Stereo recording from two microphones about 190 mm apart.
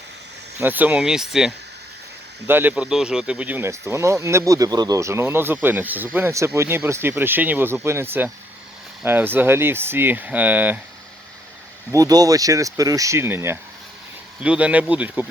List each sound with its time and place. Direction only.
0.6 s speech: 10° right (ahead or behind)
11.9 s speech: 20° right (ahead or behind)